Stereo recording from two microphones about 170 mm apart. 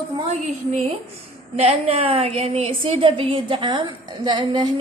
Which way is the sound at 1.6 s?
40° right (ahead or behind).